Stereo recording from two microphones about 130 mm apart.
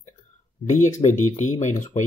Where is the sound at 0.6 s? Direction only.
65° left (ahead or behind).